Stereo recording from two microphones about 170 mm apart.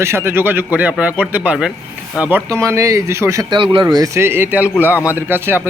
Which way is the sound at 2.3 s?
15° right (ahead or behind).